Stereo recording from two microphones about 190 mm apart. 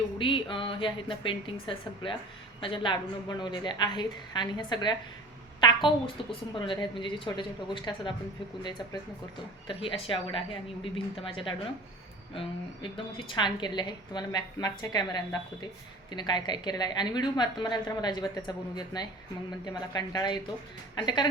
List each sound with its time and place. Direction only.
0.2 s a woman's voice: 25° left (ahead or behind)
2.6 s a woman's voice: 25° left (ahead or behind)
9.6 s a woman's voice: 30° left (ahead or behind)